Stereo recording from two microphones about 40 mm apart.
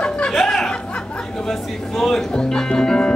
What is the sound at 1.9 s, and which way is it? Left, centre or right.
Music, centre.